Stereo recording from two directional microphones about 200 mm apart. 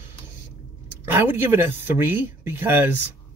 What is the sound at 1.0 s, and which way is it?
Speech, 10° right (ahead or behind).